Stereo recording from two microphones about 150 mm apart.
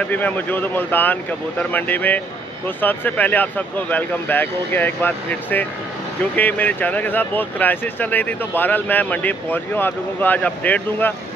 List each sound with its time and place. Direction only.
0.1 s speech: 10° left (ahead or behind)